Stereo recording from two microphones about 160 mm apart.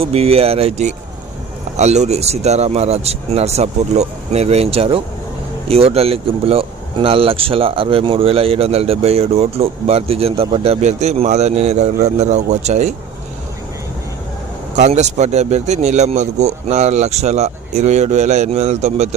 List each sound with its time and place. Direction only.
0.0 s speech: 40° right (ahead or behind)
14.8 s speech: 45° right (ahead or behind)